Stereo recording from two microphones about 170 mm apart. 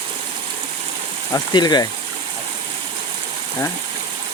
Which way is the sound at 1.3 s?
25° left (ahead or behind).